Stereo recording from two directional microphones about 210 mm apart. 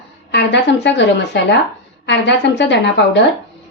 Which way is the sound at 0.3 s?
55° left (ahead or behind).